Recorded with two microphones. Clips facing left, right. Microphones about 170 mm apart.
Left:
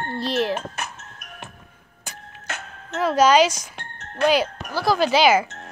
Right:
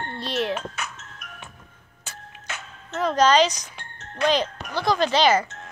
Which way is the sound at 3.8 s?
60° left (ahead or behind).